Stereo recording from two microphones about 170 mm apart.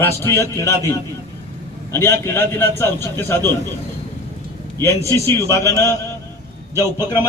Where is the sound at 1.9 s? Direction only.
15° left (ahead or behind).